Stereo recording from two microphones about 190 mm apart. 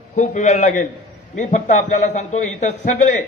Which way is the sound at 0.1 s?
40° left (ahead or behind).